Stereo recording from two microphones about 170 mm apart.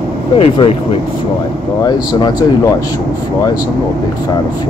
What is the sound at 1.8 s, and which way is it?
Speech, 25° left (ahead or behind).